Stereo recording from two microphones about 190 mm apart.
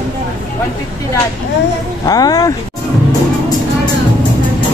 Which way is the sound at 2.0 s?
20° left (ahead or behind).